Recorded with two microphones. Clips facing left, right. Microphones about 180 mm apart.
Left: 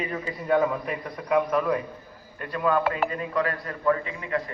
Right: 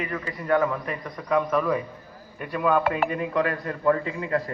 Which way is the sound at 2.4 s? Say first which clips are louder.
Right 1 dB; 10° right (ahead or behind).